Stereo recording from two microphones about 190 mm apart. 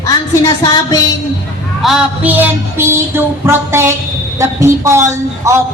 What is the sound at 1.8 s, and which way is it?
A man's voice, 5° right (ahead or behind).